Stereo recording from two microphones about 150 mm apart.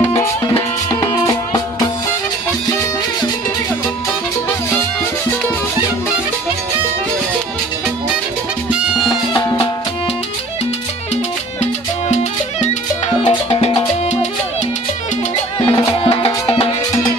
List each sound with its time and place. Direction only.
1.0 s music: 25° left (ahead or behind)
8.6 s music: 5° right (ahead or behind)
9.1 s music: 30° left (ahead or behind)
12.1 s music: 50° left (ahead or behind)
15.7 s music: 35° left (ahead or behind)